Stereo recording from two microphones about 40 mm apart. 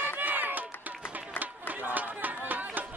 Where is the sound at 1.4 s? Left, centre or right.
Right.